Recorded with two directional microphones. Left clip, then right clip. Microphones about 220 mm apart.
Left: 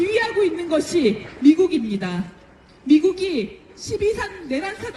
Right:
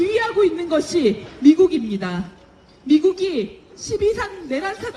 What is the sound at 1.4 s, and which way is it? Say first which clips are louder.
Speech: right 2 dB; 20° left (ahead or behind).